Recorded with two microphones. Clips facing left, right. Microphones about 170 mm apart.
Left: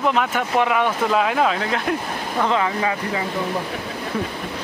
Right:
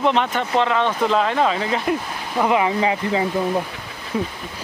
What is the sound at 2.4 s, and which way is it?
Speech, 15° right (ahead or behind).